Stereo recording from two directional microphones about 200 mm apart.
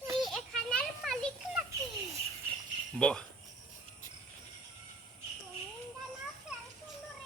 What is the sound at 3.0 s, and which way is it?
Speech, 5° left (ahead or behind).